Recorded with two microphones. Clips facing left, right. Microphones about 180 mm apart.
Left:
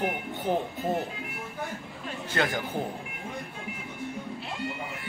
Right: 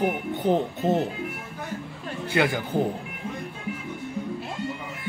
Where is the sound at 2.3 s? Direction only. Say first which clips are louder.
Right 5 dB; 15° right (ahead or behind).